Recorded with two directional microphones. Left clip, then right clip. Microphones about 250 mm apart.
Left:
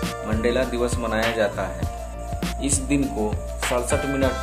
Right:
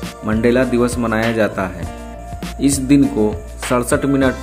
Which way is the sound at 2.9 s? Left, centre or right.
Right.